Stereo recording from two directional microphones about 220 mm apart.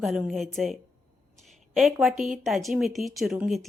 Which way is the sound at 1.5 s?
Centre (ahead or behind).